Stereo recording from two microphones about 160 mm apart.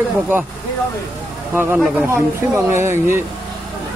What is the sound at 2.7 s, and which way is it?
Speech, 15° right (ahead or behind).